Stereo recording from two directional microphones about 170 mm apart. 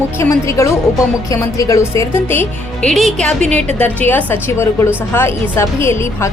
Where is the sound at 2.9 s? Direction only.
Centre (ahead or behind).